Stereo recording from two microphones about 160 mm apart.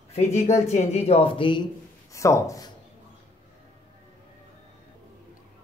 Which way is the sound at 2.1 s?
20° left (ahead or behind).